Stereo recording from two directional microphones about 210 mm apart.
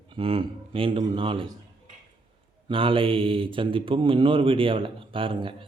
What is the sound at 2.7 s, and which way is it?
Speech, 25° right (ahead or behind).